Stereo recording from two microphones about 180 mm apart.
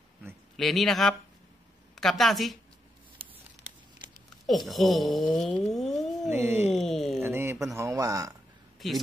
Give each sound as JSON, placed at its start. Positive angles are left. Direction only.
{"t": 0.6, "sound": "speech", "side_deg": 0}
{"t": 4.5, "sound": "speech", "side_deg": 0}
{"t": 6.3, "sound": "speech", "side_deg": -10}
{"t": 6.7, "sound": "speech", "side_deg": 0}
{"t": 7.2, "sound": "speech", "side_deg": -15}
{"t": 8.7, "sound": "a sound", "side_deg": 0}